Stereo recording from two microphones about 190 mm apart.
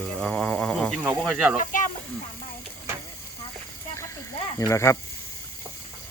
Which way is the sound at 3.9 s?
15° left (ahead or behind).